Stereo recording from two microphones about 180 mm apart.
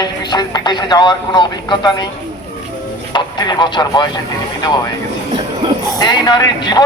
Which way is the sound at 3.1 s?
25° left (ahead or behind).